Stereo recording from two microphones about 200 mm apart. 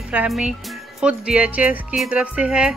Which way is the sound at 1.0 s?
5° right (ahead or behind).